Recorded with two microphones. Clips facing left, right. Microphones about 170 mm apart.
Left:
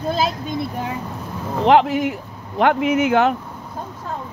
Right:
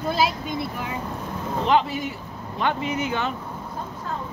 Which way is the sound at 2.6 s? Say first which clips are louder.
Left 8 dB; 80° left.